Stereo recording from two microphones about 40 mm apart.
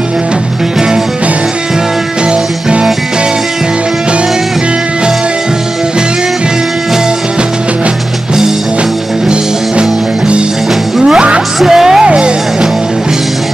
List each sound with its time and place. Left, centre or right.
9.3 s music: right
11.6 s music: centre